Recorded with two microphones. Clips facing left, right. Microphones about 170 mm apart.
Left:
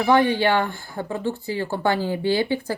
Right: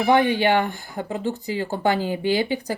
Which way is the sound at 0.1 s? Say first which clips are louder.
Even; 15° right (ahead or behind).